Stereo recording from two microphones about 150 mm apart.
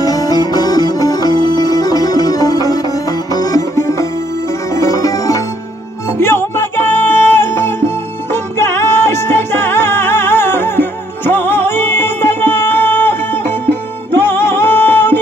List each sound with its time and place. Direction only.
0.0 s music: 25° left (ahead or behind)